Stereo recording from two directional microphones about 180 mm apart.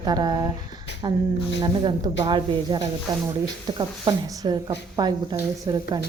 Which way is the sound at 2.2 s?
25° right (ahead or behind).